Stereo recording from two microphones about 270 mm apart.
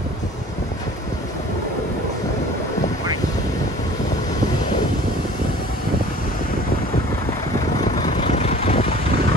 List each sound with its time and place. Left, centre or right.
8.0 s vehicle: left